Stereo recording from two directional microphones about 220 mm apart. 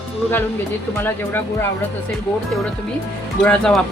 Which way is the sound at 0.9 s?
10° left (ahead or behind).